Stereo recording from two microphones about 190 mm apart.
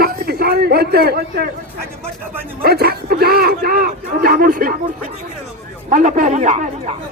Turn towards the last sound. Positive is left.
turn(degrees=-40)  # may be behind; listen again after turning